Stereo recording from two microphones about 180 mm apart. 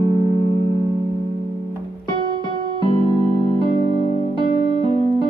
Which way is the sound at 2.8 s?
30° left (ahead or behind).